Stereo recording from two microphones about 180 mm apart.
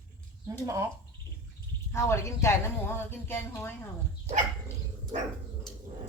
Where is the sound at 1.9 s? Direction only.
15° left (ahead or behind).